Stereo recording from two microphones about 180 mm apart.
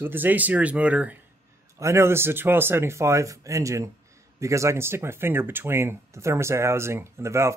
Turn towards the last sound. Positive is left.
turn(degrees=-15)  # may be behind; listen again after turning